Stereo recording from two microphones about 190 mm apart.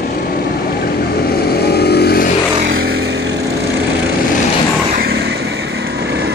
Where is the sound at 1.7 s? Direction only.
60° left (ahead or behind).